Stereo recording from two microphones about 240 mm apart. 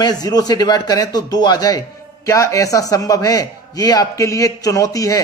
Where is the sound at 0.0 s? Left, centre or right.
Centre.